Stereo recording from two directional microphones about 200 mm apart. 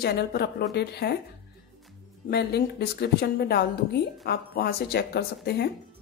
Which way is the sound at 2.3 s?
50° left (ahead or behind).